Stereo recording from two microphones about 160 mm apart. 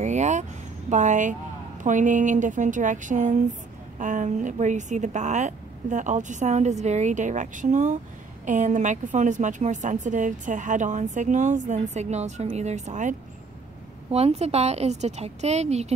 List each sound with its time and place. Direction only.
0.0 s a sound: 45° right (ahead or behind)
1.8 s a woman's voice: 50° right (ahead or behind)
14.1 s a woman's voice: 40° right (ahead or behind)